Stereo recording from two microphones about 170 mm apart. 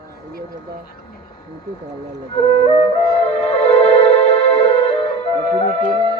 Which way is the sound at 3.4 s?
40° left (ahead or behind).